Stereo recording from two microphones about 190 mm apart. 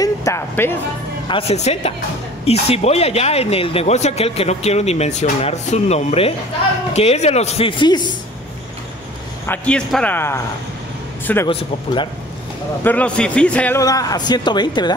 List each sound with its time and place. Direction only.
0.0 s speech: 15° left (ahead or behind)
1.3 s speech: 35° left (ahead or behind)
9.5 s a man's voice: 5° left (ahead or behind)
11.4 s a man's voice: 25° left (ahead or behind)
12.8 s a man's voice: 5° left (ahead or behind); by 15.0 s 20° left (ahead or behind)